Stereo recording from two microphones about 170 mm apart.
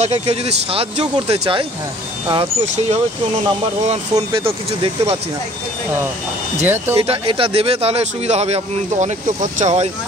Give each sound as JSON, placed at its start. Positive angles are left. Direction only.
{"t": 0.0, "sound": "a man's voice", "side_deg": -40}
{"t": 2.6, "sound": "speech", "side_deg": -45}
{"t": 4.1, "sound": "a man's voice", "side_deg": -30}
{"t": 6.6, "sound": "speech", "side_deg": -15}
{"t": 7.0, "sound": "a man's voice", "side_deg": -35}